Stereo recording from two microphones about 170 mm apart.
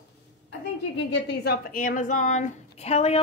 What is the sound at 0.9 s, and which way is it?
A woman's voice, 90° left.